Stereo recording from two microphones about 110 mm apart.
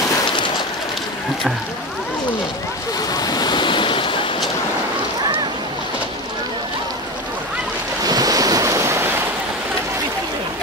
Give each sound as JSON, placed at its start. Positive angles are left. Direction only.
{"t": 3.1, "sound": "waves", "side_deg": 35}
{"t": 8.0, "sound": "waves", "side_deg": -35}